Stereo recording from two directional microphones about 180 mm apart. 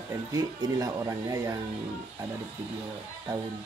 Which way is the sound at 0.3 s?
20° right (ahead or behind).